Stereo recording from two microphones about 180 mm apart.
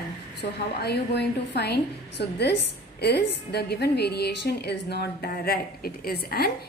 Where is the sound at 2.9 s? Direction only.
65° left (ahead or behind).